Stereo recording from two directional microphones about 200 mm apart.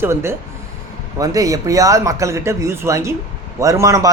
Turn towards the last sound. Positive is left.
turn(degrees=-15)  # may be behind; listen again after turning